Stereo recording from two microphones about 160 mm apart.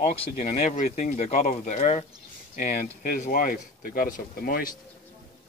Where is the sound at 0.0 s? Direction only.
40° left (ahead or behind).